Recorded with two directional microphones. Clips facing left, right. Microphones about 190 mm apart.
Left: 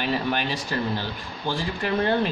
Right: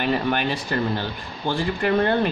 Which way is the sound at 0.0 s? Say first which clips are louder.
Right 3 dB; 55° right (ahead or behind).